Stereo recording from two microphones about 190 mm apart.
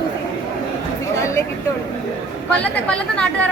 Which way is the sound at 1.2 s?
15° left (ahead or behind).